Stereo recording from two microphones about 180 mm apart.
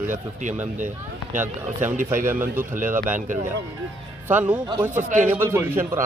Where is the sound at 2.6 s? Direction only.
45° right (ahead or behind).